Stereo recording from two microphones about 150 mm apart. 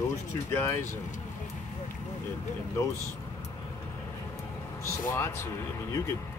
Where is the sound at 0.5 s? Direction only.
20° left (ahead or behind).